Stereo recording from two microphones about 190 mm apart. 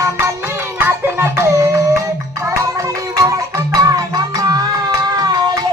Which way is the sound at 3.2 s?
20° right (ahead or behind).